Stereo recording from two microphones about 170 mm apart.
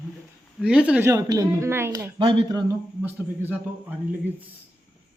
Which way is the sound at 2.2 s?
30° right (ahead or behind).